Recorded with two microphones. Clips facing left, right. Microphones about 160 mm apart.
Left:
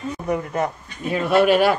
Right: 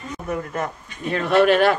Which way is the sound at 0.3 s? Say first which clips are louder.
Left 3 dB; 15° left (ahead or behind).